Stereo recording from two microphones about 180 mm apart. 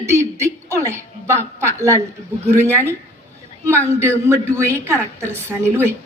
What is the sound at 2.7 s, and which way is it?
A woman's voice, 15° right (ahead or behind).